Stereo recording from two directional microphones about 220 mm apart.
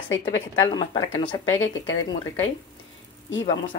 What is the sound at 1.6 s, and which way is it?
Speech, 60° left (ahead or behind).